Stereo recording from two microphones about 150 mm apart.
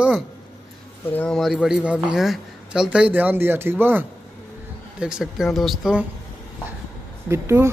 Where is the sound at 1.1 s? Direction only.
5° left (ahead or behind).